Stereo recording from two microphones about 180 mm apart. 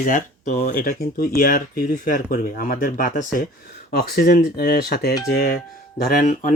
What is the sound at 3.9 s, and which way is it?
Speech, 60° left (ahead or behind).